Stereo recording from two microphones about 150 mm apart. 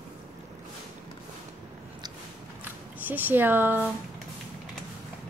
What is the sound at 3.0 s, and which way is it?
Speech, 10° right (ahead or behind).